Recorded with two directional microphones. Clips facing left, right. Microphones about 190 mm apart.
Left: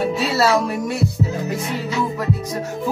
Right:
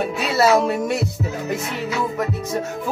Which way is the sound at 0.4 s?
20° right (ahead or behind).